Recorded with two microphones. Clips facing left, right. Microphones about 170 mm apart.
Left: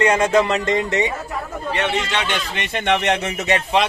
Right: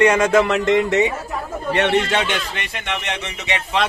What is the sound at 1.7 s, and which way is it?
Speech, 65° right (ahead or behind).